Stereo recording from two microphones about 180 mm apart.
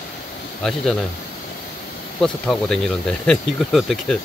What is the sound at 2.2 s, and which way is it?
Speech, 5° left (ahead or behind).